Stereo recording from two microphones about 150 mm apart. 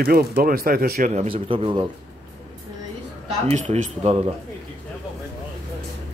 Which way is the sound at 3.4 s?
50° right (ahead or behind).